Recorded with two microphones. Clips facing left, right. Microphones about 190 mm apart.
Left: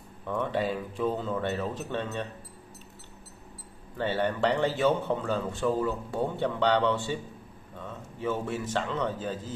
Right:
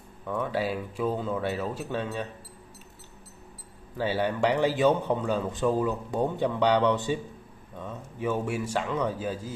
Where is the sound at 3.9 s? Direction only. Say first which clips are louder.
Right 1 dB; 10° right (ahead or behind).